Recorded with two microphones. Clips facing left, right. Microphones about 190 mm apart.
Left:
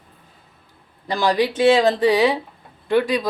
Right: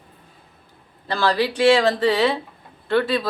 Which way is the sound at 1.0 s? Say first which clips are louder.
Left 2 dB; 15° left (ahead or behind).